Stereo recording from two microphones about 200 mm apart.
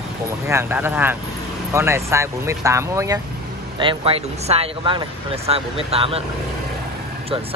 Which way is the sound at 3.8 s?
25° right (ahead or behind).